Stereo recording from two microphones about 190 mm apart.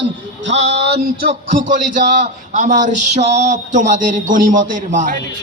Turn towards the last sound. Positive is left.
turn(degrees=-40)  # may be behind; listen again after turning